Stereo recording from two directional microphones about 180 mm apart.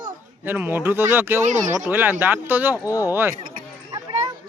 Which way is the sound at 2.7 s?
20° left (ahead or behind).